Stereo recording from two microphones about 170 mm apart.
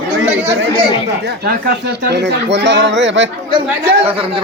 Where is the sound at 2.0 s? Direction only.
85° right.